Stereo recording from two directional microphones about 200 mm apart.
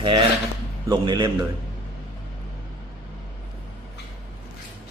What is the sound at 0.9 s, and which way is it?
Speech, 20° right (ahead or behind).